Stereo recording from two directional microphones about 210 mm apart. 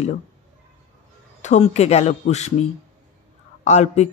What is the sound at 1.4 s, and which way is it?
Speech, 30° left (ahead or behind).